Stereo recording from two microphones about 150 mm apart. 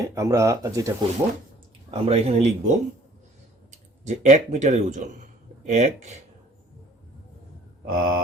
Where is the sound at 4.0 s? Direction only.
50° right (ahead or behind).